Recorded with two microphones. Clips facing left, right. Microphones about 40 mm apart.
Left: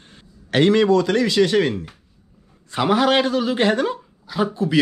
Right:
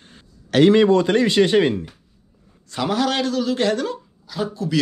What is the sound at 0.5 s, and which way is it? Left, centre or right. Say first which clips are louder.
Speech: right 2 dB; centre.